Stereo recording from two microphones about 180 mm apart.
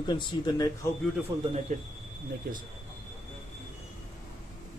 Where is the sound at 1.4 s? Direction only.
40° right (ahead or behind).